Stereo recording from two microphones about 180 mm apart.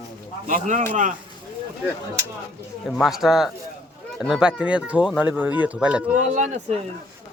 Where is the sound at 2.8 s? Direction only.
Centre (ahead or behind).